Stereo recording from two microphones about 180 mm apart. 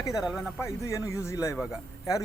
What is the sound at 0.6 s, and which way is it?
Speech, 15° left (ahead or behind).